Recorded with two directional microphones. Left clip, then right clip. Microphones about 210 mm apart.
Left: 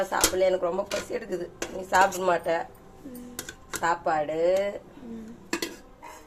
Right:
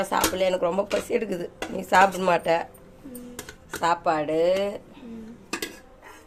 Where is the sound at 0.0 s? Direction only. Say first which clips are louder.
Right 1 dB; 45° right (ahead or behind).